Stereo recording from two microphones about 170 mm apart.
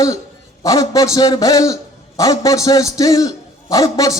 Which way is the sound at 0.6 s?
20° left (ahead or behind).